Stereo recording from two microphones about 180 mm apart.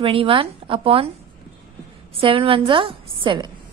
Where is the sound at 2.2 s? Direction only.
30° right (ahead or behind).